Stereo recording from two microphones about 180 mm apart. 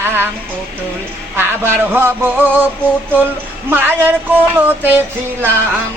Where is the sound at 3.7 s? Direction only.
10° right (ahead or behind).